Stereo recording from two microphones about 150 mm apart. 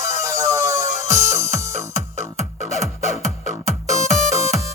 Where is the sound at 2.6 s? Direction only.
50° left (ahead or behind).